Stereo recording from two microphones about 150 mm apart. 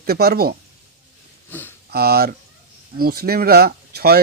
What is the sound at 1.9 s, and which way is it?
Speech, 90° right.